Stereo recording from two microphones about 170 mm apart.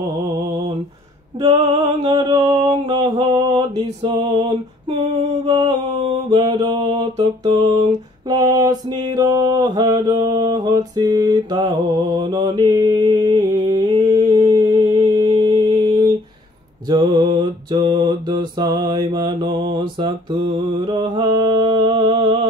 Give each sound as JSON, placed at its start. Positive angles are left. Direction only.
{"t": 1.4, "sound": "a sound", "side_deg": -25}
{"t": 4.1, "sound": "music", "side_deg": -35}
{"t": 5.4, "sound": "mantra", "side_deg": -30}
{"t": 8.3, "sound": "mantra", "side_deg": -20}